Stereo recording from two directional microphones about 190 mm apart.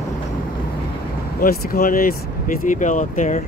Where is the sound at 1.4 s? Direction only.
50° left (ahead or behind).